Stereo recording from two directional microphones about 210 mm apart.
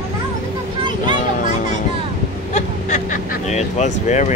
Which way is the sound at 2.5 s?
35° left (ahead or behind).